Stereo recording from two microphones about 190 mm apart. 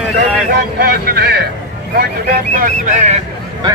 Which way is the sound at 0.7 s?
55° right (ahead or behind).